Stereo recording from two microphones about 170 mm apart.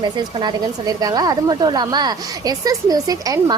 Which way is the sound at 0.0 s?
25° right (ahead or behind).